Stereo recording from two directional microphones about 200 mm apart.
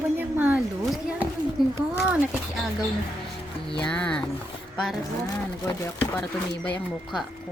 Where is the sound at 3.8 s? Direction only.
5° left (ahead or behind).